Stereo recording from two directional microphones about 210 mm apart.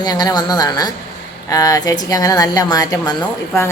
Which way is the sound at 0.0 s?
20° left (ahead or behind).